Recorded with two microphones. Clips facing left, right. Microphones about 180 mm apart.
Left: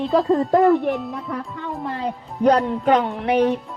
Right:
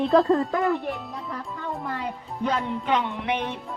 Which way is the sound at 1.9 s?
35° left (ahead or behind).